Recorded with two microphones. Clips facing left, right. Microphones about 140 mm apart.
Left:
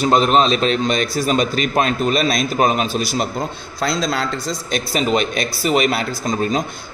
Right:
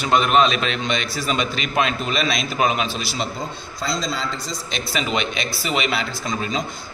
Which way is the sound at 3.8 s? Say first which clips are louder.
Left 5 dB; 65° left (ahead or behind).